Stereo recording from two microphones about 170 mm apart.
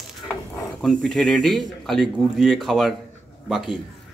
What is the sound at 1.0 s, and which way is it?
Speech, 5° left (ahead or behind).